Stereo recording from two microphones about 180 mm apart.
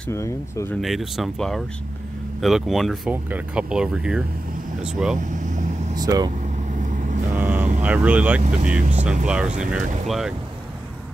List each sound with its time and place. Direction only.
0.1 s speech: 15° left (ahead or behind)
0.7 s speech: centre (ahead or behind)
5.9 s speech: 20° right (ahead or behind)
6.8 s vehicle: 45° right (ahead or behind)
7.3 s vehicle: 10° right (ahead or behind)
7.8 s speech: 10° right (ahead or behind)
8.5 s speech: 40° right (ahead or behind)
9.2 s speech: 5° right (ahead or behind)